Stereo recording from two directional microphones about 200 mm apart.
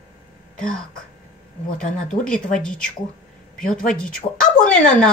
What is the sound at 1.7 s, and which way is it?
A woman's voice, 5° left (ahead or behind).